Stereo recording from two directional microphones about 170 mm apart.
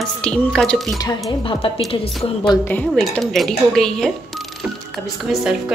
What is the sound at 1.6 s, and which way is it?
Speech, 35° left (ahead or behind).